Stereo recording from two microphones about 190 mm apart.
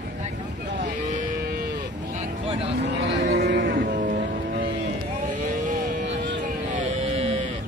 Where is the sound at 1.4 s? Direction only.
55° right (ahead or behind).